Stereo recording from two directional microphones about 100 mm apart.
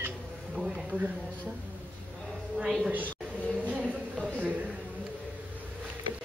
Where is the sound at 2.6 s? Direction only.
5° right (ahead or behind).